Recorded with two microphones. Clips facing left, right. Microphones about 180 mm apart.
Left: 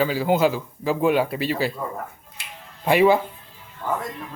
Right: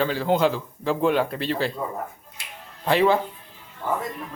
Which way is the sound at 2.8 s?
10° left (ahead or behind).